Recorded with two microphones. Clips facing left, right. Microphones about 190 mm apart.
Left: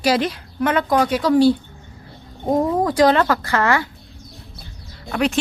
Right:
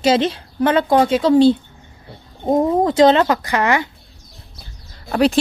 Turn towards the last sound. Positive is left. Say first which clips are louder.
# right 5 dB
turn(degrees=-35)  # may be behind; listen again after turning